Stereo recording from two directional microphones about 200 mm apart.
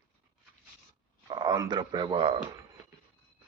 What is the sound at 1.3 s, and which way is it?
Speech, 20° right (ahead or behind).